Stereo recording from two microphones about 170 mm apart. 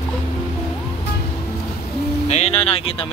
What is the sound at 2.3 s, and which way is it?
Speech, 40° left (ahead or behind).